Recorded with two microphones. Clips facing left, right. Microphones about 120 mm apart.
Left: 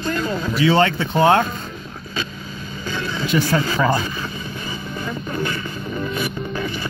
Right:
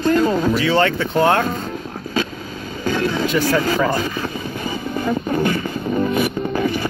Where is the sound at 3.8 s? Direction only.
45° right (ahead or behind).